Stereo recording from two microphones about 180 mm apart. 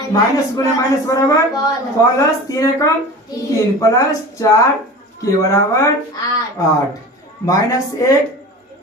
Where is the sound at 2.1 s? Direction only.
20° left (ahead or behind).